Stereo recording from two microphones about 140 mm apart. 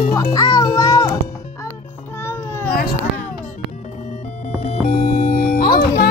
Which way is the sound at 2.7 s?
90° left.